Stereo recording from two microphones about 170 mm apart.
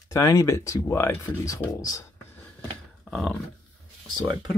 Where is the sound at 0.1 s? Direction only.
20° left (ahead or behind).